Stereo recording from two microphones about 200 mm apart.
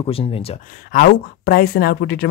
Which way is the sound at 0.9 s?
50° left (ahead or behind).